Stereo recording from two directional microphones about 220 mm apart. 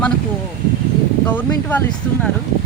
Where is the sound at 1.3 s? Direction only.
10° left (ahead or behind).